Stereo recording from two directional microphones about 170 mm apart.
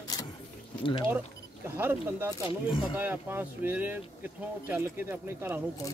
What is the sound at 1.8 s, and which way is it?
Speech, 15° right (ahead or behind).